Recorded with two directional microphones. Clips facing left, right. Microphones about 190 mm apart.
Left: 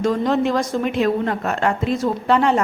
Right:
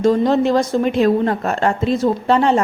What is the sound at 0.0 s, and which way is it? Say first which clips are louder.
A woman's voice: right 4 dB; 30° right (ahead or behind).